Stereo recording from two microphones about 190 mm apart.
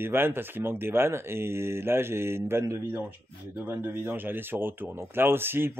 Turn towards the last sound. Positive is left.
turn(degrees=-10)  # may be behind; listen again after turning